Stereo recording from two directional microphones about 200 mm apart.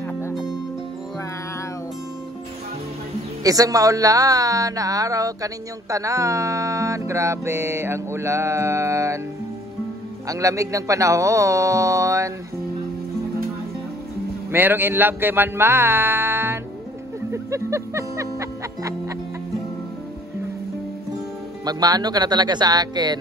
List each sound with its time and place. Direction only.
0.3 s music: centre (ahead or behind)
3.4 s speech: 15° right (ahead or behind)
10.2 s speech: 15° right (ahead or behind)
14.5 s speech: 10° right (ahead or behind)
17.3 s music: 15° right (ahead or behind)
21.6 s speech: 20° right (ahead or behind)